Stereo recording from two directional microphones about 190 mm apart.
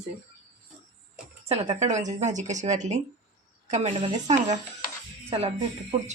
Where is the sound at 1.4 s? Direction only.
35° right (ahead or behind).